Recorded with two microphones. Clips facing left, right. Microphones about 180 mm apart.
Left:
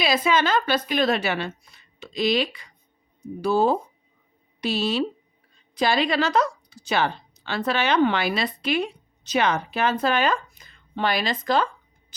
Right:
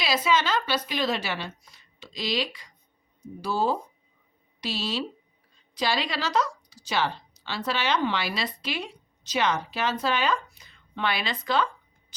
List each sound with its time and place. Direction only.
0.0 s a woman's voice: 55° left (ahead or behind)